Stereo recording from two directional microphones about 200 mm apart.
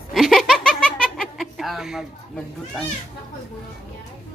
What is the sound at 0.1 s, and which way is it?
Giggle, centre (ahead or behind).